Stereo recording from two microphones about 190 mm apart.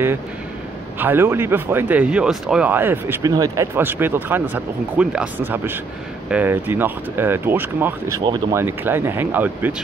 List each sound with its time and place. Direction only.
0.9 s speech: 10° right (ahead or behind)
8.2 s speech: 25° right (ahead or behind)
8.5 s speech: 10° right (ahead or behind)